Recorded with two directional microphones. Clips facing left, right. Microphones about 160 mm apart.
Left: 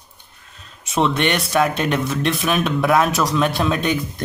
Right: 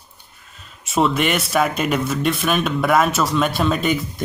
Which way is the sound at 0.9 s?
Centre (ahead or behind).